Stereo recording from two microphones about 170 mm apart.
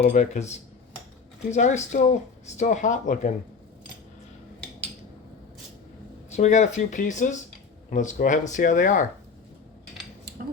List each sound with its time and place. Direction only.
0.2 s speech: 40° left (ahead or behind)
6.3 s speech: 45° left (ahead or behind)